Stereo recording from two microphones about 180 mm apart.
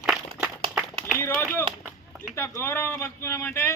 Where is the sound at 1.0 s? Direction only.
15° left (ahead or behind).